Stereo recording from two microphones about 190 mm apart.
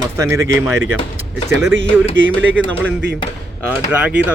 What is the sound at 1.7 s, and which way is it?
Speech, 90° right.